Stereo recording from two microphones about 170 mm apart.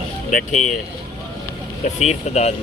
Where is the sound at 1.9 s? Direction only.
40° left (ahead or behind).